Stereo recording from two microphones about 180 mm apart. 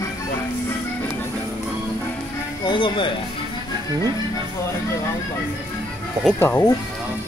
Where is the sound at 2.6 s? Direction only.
25° left (ahead or behind).